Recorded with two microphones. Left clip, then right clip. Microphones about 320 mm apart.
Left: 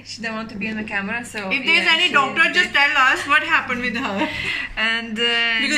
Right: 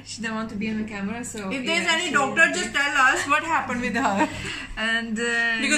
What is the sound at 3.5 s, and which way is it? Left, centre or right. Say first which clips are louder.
Speech: left 4 dB; right.